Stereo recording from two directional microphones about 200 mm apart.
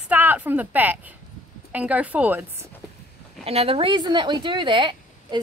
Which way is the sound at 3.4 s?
30° right (ahead or behind).